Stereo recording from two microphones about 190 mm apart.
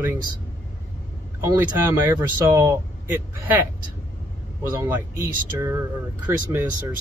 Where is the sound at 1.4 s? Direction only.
15° right (ahead or behind).